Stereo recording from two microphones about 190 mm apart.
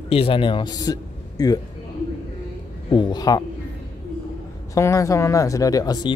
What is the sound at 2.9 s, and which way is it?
Speech, 25° left (ahead or behind).